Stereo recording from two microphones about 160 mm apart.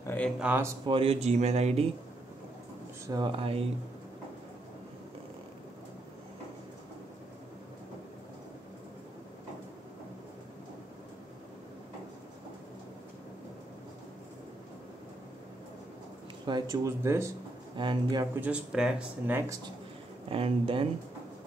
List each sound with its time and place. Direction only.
0.0 s a sound: 10° left (ahead or behind)
0.4 s speech: 15° right (ahead or behind)
0.8 s speech: 35° right (ahead or behind)
3.1 s speech: 30° right (ahead or behind)
16.4 s speech: 25° right (ahead or behind)
17.7 s speech: 30° right (ahead or behind)
18.3 s speech: 10° right (ahead or behind)
20.2 s speech: 35° right (ahead or behind)